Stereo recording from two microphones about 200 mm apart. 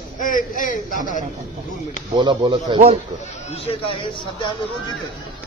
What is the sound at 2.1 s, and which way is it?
Speech, 25° right (ahead or behind).